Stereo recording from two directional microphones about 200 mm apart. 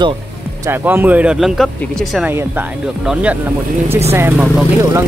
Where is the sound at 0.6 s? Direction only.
10° right (ahead or behind).